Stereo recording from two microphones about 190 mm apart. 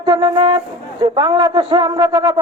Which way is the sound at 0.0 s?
20° right (ahead or behind).